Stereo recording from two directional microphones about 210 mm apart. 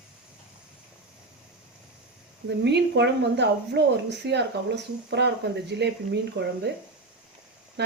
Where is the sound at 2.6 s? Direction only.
55° right (ahead or behind).